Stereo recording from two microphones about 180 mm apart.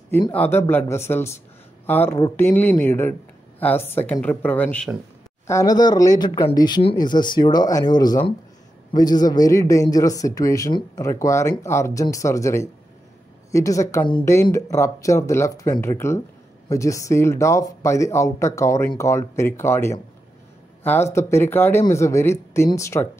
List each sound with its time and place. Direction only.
0.3 s a man's voice: 10° left (ahead or behind)
5.5 s a man's voice: 20° left (ahead or behind)